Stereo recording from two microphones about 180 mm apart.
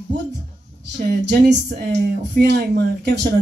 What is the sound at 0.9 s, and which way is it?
Speech, 65° right (ahead or behind).